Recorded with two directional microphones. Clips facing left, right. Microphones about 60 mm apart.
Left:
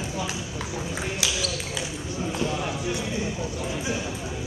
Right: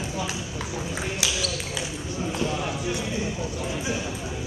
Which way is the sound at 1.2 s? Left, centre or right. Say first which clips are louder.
Even; centre.